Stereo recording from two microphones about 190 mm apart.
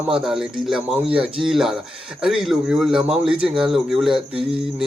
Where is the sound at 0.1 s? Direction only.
5° right (ahead or behind).